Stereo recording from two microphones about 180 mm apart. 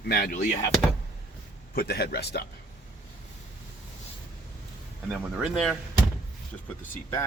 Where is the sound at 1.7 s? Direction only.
60° left (ahead or behind).